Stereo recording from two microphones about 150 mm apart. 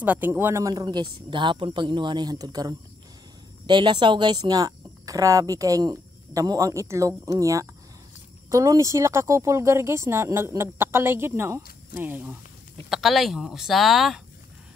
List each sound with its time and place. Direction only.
0.0 s speech: 10° right (ahead or behind)
12.9 s speech: centre (ahead or behind)